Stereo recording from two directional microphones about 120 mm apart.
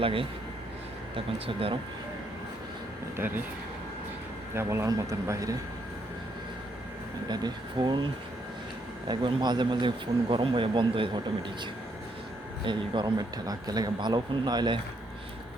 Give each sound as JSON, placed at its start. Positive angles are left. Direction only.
{"t": 0.0, "sound": "speech", "side_deg": -50}
{"t": 3.2, "sound": "speech", "side_deg": -15}
{"t": 4.5, "sound": "speech", "side_deg": -20}
{"t": 7.3, "sound": "speech", "side_deg": -35}
{"t": 9.0, "sound": "speech", "side_deg": -35}